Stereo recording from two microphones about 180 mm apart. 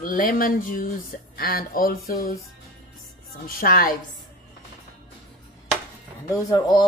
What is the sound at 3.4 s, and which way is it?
Speech, 55° left (ahead or behind).